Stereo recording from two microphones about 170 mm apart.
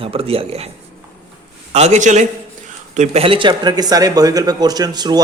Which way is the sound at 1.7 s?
40° right (ahead or behind).